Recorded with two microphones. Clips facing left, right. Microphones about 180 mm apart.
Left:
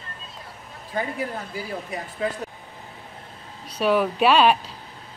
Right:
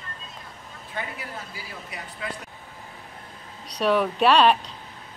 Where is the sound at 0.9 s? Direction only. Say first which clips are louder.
Left 7 dB; 45° left (ahead or behind).